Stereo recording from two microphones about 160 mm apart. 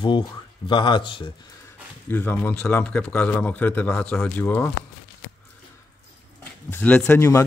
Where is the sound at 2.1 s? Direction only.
10° left (ahead or behind).